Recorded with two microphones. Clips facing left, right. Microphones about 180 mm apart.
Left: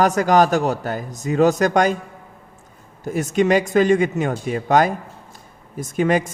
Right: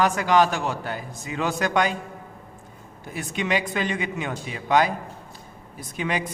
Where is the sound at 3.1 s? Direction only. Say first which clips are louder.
Left 9 dB; 45° left (ahead or behind).